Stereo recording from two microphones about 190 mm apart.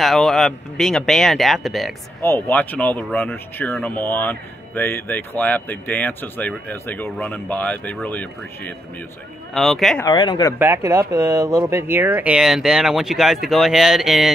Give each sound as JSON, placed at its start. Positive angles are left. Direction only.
{"t": 0.0, "sound": "speech", "side_deg": 0}
{"t": 2.2, "sound": "speech", "side_deg": 10}
{"t": 10.0, "sound": "speech", "side_deg": 20}
{"t": 10.6, "sound": "speech", "side_deg": -15}